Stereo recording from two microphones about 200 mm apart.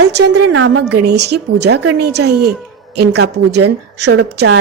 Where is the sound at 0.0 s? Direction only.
70° right (ahead or behind).